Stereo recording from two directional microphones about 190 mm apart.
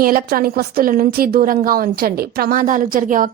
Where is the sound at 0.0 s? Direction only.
50° right (ahead or behind).